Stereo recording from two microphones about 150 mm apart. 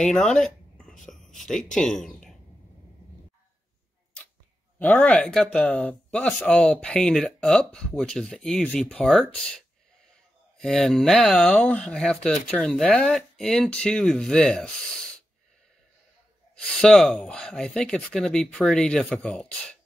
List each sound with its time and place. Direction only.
0.0 s speech: 5° left (ahead or behind)
4.7 s speech: 10° left (ahead or behind)
10.6 s speech: centre (ahead or behind)
16.5 s speech: 5° left (ahead or behind)